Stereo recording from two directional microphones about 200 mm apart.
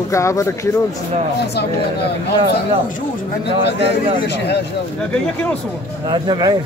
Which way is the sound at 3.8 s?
55° left (ahead or behind).